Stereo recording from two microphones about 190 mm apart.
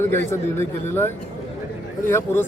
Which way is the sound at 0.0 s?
15° left (ahead or behind).